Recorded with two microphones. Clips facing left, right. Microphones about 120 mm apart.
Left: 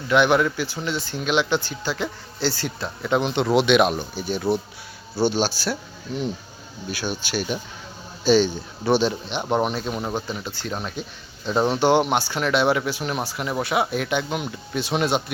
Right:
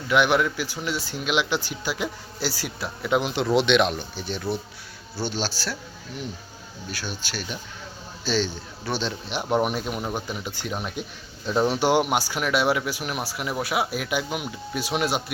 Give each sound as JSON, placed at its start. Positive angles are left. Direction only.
{"t": 0.1, "sound": "speech", "side_deg": -5}
{"t": 6.9, "sound": "speech", "side_deg": 15}
{"t": 9.2, "sound": "speech", "side_deg": -5}
{"t": 11.4, "sound": "speech", "side_deg": 30}
{"t": 11.7, "sound": "speech", "side_deg": -10}